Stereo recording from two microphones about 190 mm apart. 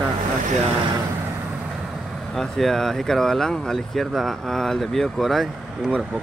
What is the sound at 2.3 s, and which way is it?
Speech, centre (ahead or behind).